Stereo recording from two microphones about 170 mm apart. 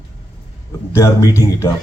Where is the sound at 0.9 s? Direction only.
15° left (ahead or behind).